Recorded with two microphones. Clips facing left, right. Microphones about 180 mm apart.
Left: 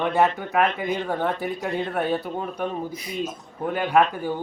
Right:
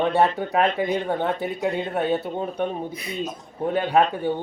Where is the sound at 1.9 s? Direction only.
25° right (ahead or behind).